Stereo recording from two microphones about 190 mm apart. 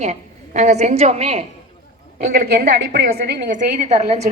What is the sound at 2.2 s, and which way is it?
A woman's voice, 50° right (ahead or behind).